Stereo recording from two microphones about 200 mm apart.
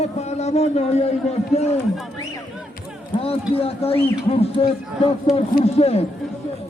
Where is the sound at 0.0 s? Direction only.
35° left (ahead or behind).